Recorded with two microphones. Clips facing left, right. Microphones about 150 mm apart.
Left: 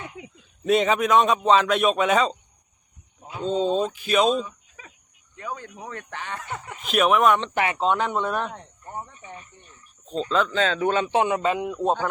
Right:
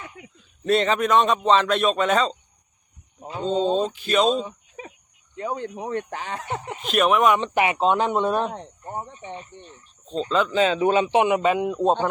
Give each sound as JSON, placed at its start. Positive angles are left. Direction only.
{"t": 0.0, "sound": "a sound", "side_deg": 20}
{"t": 0.6, "sound": "speech", "side_deg": 5}
{"t": 4.3, "sound": "a sound", "side_deg": -30}
{"t": 5.4, "sound": "speech", "side_deg": -30}
{"t": 6.1, "sound": "speech", "side_deg": -50}
{"t": 6.5, "sound": "speech", "side_deg": -25}
{"t": 6.9, "sound": "speech", "side_deg": 0}
{"t": 7.4, "sound": "speech", "side_deg": -15}
{"t": 10.1, "sound": "speech", "side_deg": 0}
{"t": 10.6, "sound": "a man's voice", "side_deg": -15}